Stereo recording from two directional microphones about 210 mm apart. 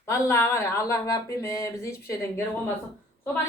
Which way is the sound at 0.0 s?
10° left (ahead or behind).